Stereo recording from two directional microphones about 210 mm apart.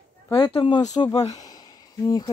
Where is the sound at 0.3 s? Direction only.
20° left (ahead or behind).